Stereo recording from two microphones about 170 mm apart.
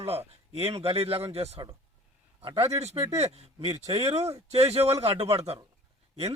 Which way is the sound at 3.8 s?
20° right (ahead or behind).